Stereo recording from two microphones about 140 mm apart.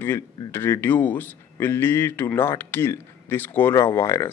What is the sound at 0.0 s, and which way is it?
A man's voice, 15° left (ahead or behind).